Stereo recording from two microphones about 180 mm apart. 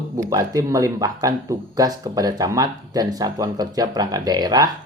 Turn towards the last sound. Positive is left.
turn(degrees=-20)  # may be behind; listen again after turning